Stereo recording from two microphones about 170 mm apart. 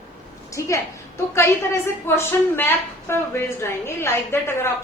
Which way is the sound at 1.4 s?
15° left (ahead or behind).